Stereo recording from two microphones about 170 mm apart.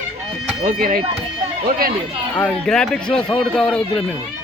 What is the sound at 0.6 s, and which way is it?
Speech, 55° right (ahead or behind).